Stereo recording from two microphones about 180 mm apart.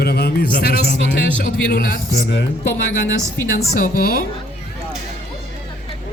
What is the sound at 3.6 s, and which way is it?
Speech, 55° left (ahead or behind).